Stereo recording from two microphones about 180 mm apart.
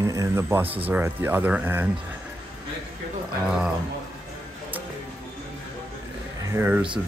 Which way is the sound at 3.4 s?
5° right (ahead or behind).